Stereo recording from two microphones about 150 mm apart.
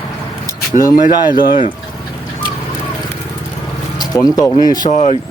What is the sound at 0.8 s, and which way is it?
Speech, 25° left (ahead or behind).